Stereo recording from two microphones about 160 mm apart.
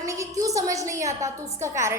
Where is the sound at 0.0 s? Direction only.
20° right (ahead or behind).